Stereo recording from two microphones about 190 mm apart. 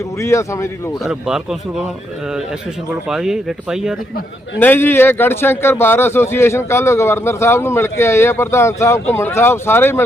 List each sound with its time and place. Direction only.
0.2 s a man's voice: 15° left (ahead or behind)
1.0 s a man's voice: 5° right (ahead or behind)
3.1 s a man's voice: 5° right (ahead or behind)
4.6 s a man's voice: 10° left (ahead or behind)